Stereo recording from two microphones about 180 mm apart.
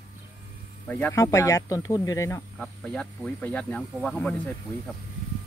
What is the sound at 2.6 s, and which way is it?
Speech, 5° left (ahead or behind).